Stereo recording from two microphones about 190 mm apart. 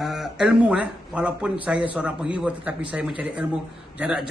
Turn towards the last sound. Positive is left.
turn(degrees=-10)  # may be behind; listen again after turning